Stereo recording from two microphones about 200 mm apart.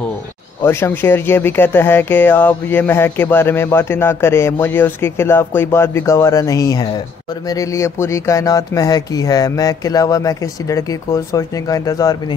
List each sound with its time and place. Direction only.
0.6 s speech: 10° left (ahead or behind)